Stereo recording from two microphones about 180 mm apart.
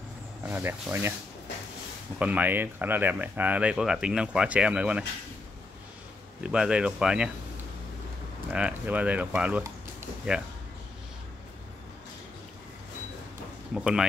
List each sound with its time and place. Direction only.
0.5 s speech: 10° right (ahead or behind)
2.1 s speech: 10° right (ahead or behind)
6.4 s speech: 5° right (ahead or behind)
8.5 s speech: 5° right (ahead or behind)
13.7 s speech: 5° right (ahead or behind)